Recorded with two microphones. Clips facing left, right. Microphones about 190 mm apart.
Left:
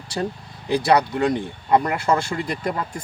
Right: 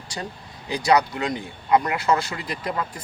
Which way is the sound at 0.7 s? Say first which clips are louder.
Left 2 dB; 55° left (ahead or behind).